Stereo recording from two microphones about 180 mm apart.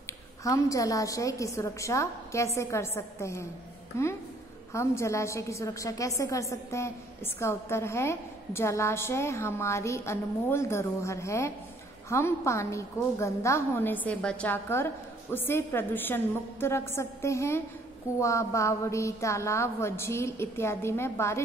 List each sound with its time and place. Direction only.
0.4 s a woman's voice: 20° left (ahead or behind)